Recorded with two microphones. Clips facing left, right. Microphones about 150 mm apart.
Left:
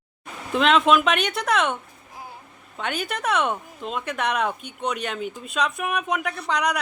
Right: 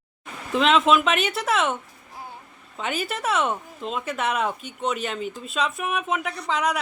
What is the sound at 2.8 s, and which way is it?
A woman's voice, 5° right (ahead or behind).